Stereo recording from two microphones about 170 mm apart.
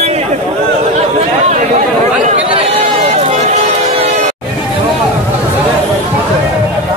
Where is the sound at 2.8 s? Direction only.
40° right (ahead or behind).